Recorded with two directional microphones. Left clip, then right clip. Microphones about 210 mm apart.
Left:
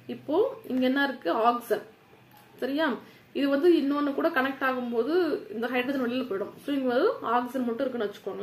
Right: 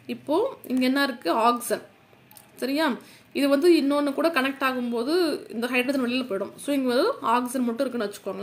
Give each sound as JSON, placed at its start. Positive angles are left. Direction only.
{"t": 0.3, "sound": "a woman's voice", "side_deg": -40}